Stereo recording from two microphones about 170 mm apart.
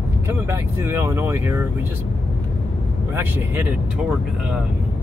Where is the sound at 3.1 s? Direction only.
10° right (ahead or behind).